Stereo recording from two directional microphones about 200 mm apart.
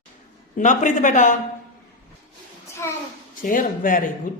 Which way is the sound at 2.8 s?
15° left (ahead or behind).